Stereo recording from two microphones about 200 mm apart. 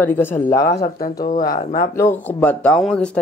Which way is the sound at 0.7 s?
50° left (ahead or behind).